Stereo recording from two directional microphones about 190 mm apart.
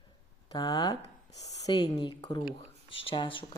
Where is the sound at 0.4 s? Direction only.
20° left (ahead or behind).